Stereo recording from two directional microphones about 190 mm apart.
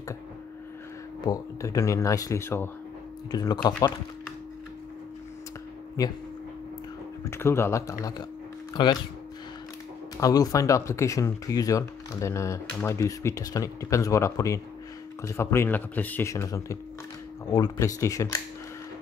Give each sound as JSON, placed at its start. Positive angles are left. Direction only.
{"t": 1.2, "sound": "speech", "side_deg": 20}
{"t": 7.2, "sound": "speech", "side_deg": 15}
{"t": 10.2, "sound": "speech", "side_deg": 20}